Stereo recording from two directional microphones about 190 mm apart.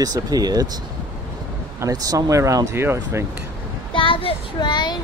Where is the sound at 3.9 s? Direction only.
25° left (ahead or behind).